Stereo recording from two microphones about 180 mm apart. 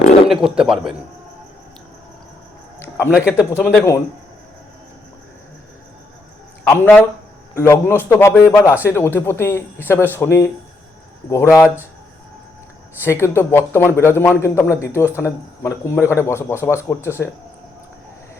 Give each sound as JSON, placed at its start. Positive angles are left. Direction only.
{"t": 0.3, "sound": "a man's voice", "side_deg": -5}
{"t": 2.7, "sound": "a sound", "side_deg": 15}
{"t": 3.1, "sound": "a man's voice", "side_deg": -5}
{"t": 6.7, "sound": "a man's voice", "side_deg": 10}
{"t": 13.0, "sound": "a man's voice", "side_deg": 15}